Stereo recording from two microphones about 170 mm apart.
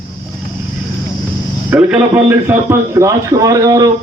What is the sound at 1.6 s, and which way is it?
A man's voice, 10° right (ahead or behind).